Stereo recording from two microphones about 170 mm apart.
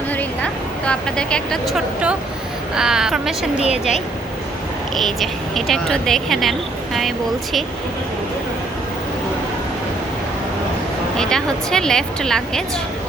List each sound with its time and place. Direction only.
0.9 s speech: 5° left (ahead or behind)
3.7 s a woman's voice: 45° left (ahead or behind)
4.9 s speech: centre (ahead or behind)
11.2 s speech: 5° left (ahead or behind)